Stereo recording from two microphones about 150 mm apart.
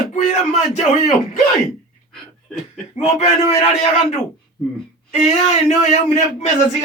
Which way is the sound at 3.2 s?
50° left (ahead or behind).